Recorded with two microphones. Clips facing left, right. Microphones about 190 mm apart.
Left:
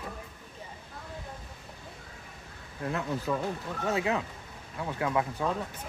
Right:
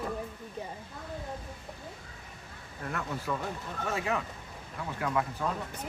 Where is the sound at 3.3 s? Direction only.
20° left (ahead or behind).